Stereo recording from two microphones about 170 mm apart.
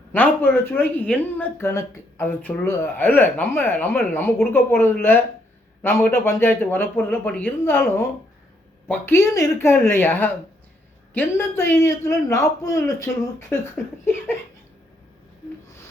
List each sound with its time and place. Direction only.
0.1 s a woman's voice: 10° left (ahead or behind)
14.0 s a woman's voice: 15° left (ahead or behind)